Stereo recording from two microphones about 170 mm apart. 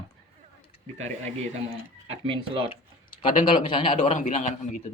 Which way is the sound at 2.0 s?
35° right (ahead or behind).